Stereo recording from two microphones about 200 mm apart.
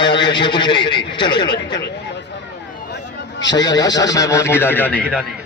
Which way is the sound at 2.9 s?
60° left (ahead or behind).